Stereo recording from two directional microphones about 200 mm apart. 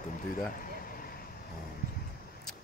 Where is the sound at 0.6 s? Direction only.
45° left (ahead or behind).